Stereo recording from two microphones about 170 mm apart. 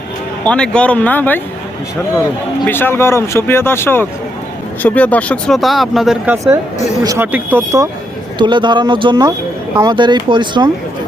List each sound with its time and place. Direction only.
0.4 s speech: 5° left (ahead or behind)
2.6 s speech: 10° left (ahead or behind); by 6.4 s 5° right (ahead or behind)
7.0 s speech: 20° right (ahead or behind)
8.4 s speech: 25° right (ahead or behind)